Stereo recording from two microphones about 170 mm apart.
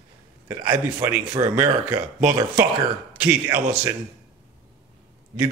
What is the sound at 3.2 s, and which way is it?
Speech, 15° right (ahead or behind).